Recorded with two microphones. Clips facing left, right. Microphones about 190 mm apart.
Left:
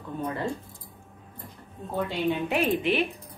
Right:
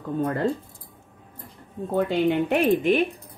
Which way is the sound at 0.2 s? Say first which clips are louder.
Right 6 dB; 55° right (ahead or behind).